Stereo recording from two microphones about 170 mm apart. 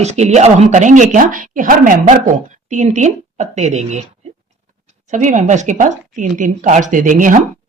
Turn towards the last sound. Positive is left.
turn(degrees=-50)  # may be behind; listen again after turning